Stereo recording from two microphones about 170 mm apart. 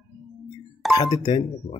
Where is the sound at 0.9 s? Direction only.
25° left (ahead or behind).